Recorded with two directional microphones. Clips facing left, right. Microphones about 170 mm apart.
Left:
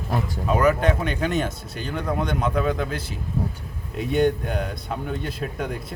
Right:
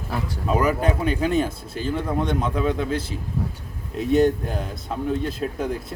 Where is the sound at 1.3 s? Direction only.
35° right (ahead or behind).